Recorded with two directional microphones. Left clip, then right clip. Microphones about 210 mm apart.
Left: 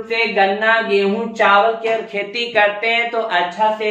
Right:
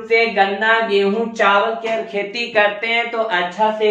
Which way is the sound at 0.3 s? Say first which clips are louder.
Left 1 dB; 20° right (ahead or behind).